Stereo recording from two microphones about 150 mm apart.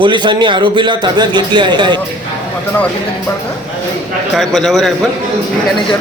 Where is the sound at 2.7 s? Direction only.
10° left (ahead or behind).